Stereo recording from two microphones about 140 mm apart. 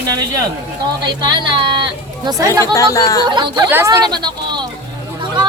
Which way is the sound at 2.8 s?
25° left (ahead or behind).